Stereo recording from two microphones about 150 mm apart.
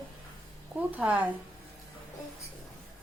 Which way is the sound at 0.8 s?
10° right (ahead or behind).